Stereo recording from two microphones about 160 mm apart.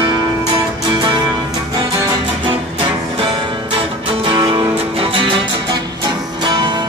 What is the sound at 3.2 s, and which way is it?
Music, 30° right (ahead or behind).